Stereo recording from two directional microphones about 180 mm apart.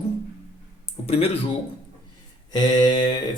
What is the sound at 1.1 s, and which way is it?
Speech, 35° left (ahead or behind).